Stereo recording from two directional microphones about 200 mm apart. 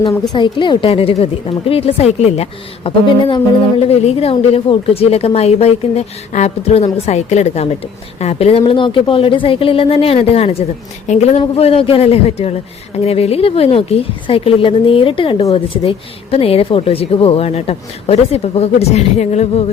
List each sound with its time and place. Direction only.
0.0 s a man's voice: 25° left (ahead or behind)